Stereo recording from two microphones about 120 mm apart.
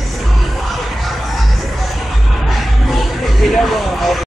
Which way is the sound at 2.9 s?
Centre (ahead or behind).